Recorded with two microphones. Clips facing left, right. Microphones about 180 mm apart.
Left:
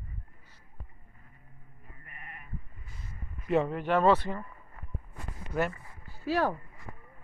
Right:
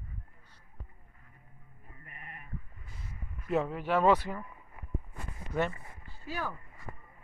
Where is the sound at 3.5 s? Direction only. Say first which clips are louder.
Left 3 dB; 5° right (ahead or behind).